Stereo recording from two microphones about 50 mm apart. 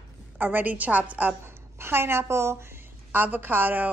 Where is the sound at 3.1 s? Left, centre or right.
Right.